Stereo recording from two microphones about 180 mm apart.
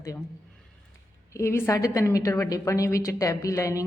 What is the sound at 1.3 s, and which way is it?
Speech, 15° left (ahead or behind).